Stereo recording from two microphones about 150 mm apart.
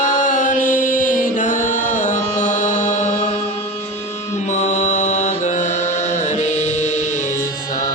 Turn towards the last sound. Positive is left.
turn(degrees=55)  # may be behind; listen again after turning